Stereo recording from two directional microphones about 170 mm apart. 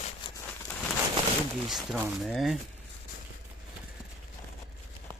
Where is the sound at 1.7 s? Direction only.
Centre (ahead or behind).